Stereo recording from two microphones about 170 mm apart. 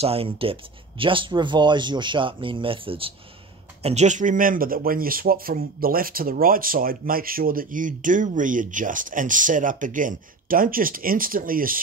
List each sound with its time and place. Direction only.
0.0 s speech: 35° right (ahead or behind); by 11.8 s 55° right (ahead or behind)